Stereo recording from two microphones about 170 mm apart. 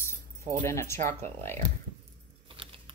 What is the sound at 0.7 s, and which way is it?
Speech, 15° left (ahead or behind).